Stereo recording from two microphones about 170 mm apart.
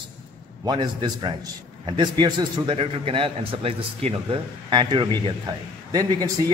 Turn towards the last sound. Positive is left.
turn(degrees=-20)  # may be behind; listen again after turning